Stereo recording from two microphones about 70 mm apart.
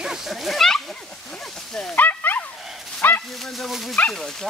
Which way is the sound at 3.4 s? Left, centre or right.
Centre.